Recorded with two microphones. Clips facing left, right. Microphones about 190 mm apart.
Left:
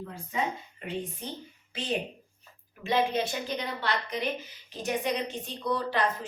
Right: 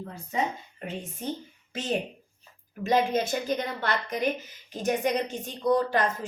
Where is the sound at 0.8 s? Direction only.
45° right (ahead or behind).